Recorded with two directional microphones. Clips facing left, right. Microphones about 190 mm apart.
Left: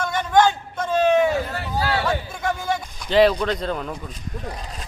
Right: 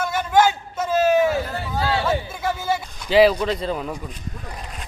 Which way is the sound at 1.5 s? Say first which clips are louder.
Even; 25° right (ahead or behind).